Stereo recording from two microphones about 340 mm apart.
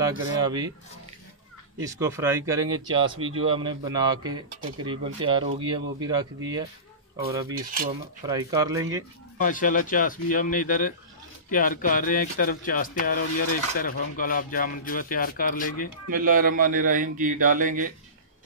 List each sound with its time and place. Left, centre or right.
0.0 s speech: centre
1.8 s speech: centre
9.4 s speech: left
16.1 s a man's voice: right